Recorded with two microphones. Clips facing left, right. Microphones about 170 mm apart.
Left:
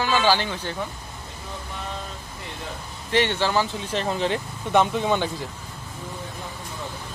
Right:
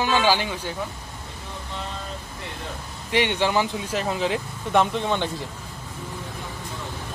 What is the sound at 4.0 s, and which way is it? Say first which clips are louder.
Speech: left 1 dB; 5° right (ahead or behind).